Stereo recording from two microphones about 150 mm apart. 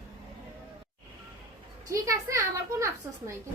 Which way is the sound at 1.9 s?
20° right (ahead or behind).